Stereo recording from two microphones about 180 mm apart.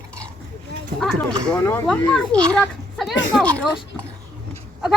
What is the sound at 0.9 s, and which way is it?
A child's voice, 5° left (ahead or behind).